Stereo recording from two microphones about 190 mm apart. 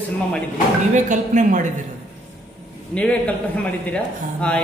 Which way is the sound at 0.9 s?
40° right (ahead or behind).